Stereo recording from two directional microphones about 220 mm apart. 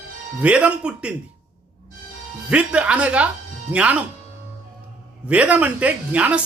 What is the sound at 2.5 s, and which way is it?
Speech, 5° right (ahead or behind).